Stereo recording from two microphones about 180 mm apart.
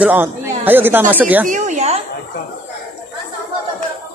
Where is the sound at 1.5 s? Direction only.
40° right (ahead or behind).